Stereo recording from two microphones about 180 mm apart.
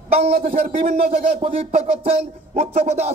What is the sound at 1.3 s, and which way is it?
Speech, 35° right (ahead or behind).